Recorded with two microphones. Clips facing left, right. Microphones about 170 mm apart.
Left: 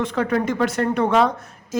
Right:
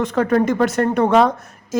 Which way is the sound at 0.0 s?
45° right (ahead or behind).